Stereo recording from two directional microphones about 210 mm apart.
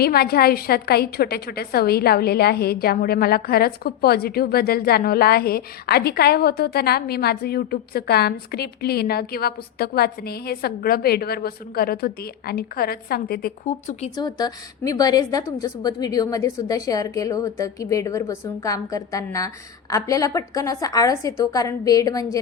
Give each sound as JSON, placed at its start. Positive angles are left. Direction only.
{"t": 0.0, "sound": "a woman's voice", "side_deg": 50}
{"t": 14.2, "sound": "a woman's voice", "side_deg": 20}